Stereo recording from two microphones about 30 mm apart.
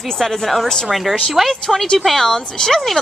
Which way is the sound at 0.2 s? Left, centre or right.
Centre.